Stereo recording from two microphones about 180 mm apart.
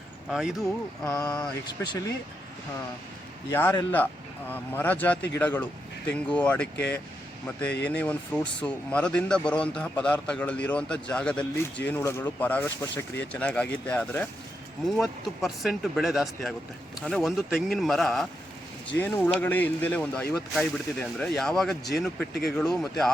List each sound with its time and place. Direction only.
0.3 s speech: centre (ahead or behind)
1.6 s speech: 25° left (ahead or behind)
3.5 s speech: 10° left (ahead or behind)